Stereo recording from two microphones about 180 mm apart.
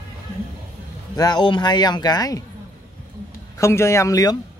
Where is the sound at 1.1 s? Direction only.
20° left (ahead or behind).